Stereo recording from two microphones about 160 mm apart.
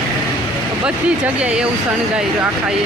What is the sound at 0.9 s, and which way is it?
Speech, 5° right (ahead or behind).